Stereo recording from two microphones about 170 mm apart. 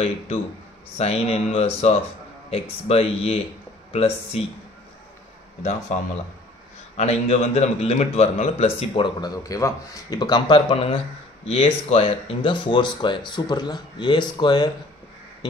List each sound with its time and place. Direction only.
0.9 s a man's voice: 35° left (ahead or behind)
5.6 s a man's voice: 45° left (ahead or behind); by 14.7 s 25° left (ahead or behind)